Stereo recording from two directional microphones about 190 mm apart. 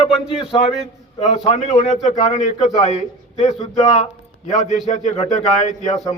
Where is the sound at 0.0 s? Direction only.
30° left (ahead or behind).